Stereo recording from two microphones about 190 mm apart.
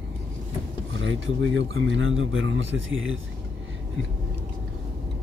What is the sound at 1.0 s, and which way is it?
Speech, 90° right.